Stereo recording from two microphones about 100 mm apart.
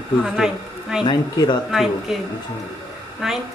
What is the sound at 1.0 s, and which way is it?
Speech, 45° left (ahead or behind).